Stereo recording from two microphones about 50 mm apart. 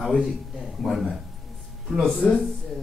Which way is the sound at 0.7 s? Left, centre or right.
Centre.